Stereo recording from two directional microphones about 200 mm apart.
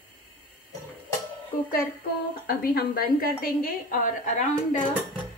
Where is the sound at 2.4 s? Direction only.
50° left (ahead or behind).